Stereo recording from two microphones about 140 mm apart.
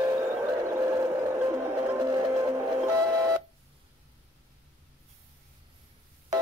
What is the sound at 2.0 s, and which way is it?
Music, 25° right (ahead or behind).